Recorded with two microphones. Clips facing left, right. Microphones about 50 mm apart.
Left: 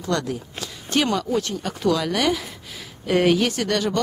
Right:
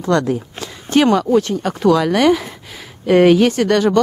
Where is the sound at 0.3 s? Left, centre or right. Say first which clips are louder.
Right 8 dB; right.